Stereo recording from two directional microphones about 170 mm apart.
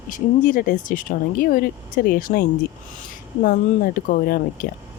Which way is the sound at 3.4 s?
55° left (ahead or behind).